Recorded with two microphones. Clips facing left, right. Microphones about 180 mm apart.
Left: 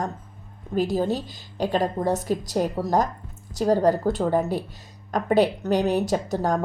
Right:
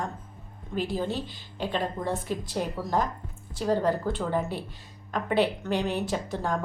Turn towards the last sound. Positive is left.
turn(degrees=40)  # may be behind; listen again after turning